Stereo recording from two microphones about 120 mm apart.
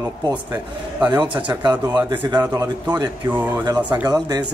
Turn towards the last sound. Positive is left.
turn(degrees=-30)  # may be behind; listen again after turning